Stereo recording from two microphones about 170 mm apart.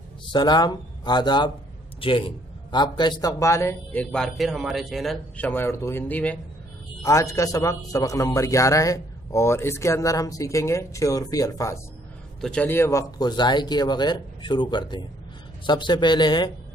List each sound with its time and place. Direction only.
0.3 s a man's voice: 25° left (ahead or behind); by 5.5 s centre (ahead or behind)
5.5 s a man's voice: 15° left (ahead or behind)
12.4 s a man's voice: 5° left (ahead or behind); by 16.5 s 25° left (ahead or behind)